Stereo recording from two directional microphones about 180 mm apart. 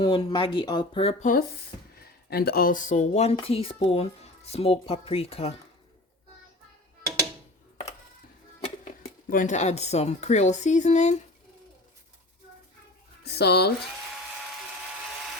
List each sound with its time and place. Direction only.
0.0 s speech: 25° left (ahead or behind)
1.2 s speech: 50° left (ahead or behind)
2.3 s a woman's voice: 60° left (ahead or behind); by 5.5 s 35° left (ahead or behind)
9.3 s a woman's voice: 45° left (ahead or behind)
13.2 s speech: 65° left (ahead or behind)